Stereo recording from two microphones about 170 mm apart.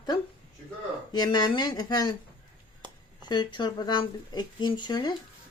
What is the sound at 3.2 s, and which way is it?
Speech, 25° left (ahead or behind).